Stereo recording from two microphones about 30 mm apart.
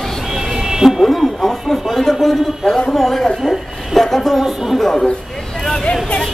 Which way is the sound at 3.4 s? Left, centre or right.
Centre.